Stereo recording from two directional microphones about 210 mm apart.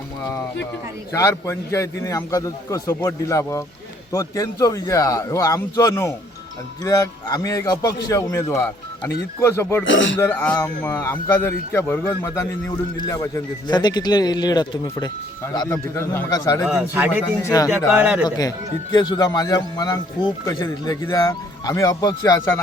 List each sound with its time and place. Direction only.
1.1 s a man's voice: 15° left (ahead or behind)
9.8 s speech: 65° left (ahead or behind)
10.2 s a man's voice: 10° left (ahead or behind)
16.6 s a man's voice: 5° right (ahead or behind)
17.4 s a man's voice: 15° left (ahead or behind)
17.7 s a man's voice: 5° right (ahead or behind)
18.3 s a man's voice: 20° left (ahead or behind)